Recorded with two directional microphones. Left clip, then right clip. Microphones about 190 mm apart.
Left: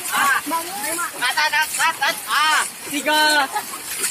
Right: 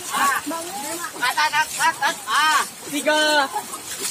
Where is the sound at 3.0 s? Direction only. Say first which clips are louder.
Left 1 dB; 45° left (ahead or behind).